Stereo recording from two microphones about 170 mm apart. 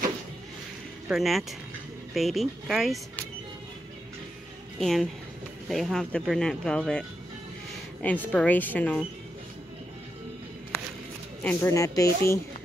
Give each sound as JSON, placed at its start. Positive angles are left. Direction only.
{"t": 1.0, "sound": "speech", "side_deg": 0}
{"t": 4.7, "sound": "a woman's voice", "side_deg": 0}
{"t": 11.4, "sound": "speech", "side_deg": 15}